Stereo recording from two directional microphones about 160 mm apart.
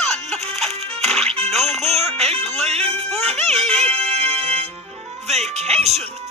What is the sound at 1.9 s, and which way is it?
Music, 40° right (ahead or behind).